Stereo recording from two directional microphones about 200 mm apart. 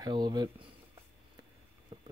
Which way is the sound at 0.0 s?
20° right (ahead or behind).